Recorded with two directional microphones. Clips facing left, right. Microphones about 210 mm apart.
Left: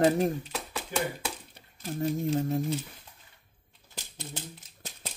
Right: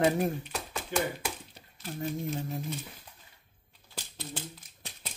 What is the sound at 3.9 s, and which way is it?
Typewriter, 20° left (ahead or behind).